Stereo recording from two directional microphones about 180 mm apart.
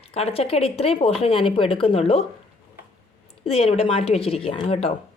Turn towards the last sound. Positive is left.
turn(degrees=30)  # may be behind; listen again after turning